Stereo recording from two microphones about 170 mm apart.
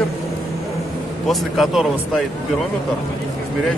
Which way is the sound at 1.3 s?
Centre (ahead or behind).